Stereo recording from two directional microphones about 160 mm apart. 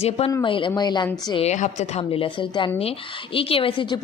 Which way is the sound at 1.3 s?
40° left (ahead or behind).